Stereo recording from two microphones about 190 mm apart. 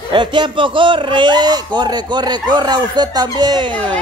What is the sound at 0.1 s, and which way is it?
A man's voice, 25° right (ahead or behind).